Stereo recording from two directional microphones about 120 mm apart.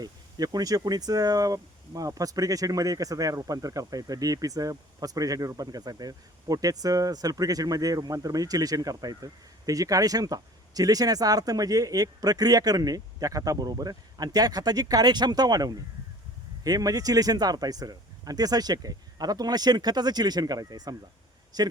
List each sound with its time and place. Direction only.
0.0 s speech: 35° right (ahead or behind)